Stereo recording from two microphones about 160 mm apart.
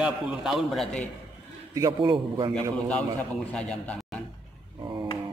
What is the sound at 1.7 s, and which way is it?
Speech, 20° right (ahead or behind).